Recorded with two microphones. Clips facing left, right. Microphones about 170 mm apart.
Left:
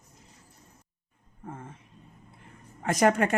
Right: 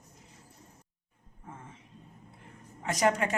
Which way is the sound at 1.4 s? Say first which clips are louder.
Left 6 dB; 50° left (ahead or behind).